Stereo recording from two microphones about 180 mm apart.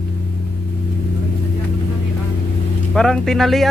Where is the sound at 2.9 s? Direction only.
5° left (ahead or behind).